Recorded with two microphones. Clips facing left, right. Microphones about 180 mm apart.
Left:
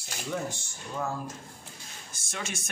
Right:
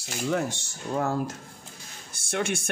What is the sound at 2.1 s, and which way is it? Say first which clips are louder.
Speech: right 10 dB; 60° right (ahead or behind).